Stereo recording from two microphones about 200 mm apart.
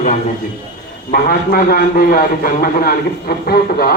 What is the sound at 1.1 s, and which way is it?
A man's voice, 45° left (ahead or behind).